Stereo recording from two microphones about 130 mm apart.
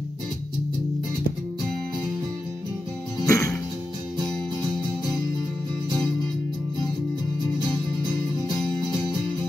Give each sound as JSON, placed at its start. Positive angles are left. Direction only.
{"t": 3.3, "sound": "music", "side_deg": 25}